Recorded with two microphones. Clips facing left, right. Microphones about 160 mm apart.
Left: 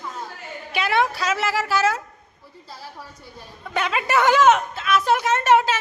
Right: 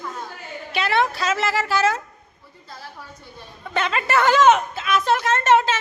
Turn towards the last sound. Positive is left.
turn(degrees=10)  # may be behind; listen again after turning